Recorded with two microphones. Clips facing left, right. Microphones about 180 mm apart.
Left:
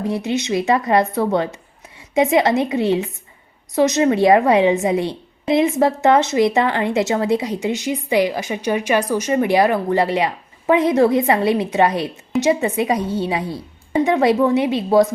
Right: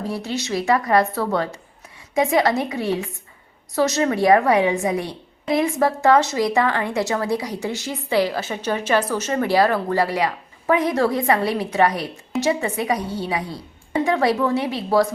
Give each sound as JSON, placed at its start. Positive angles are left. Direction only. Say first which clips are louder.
{"t": 0.0, "sound": "a woman's voice", "louder": "left 5 dB", "side_deg": 20}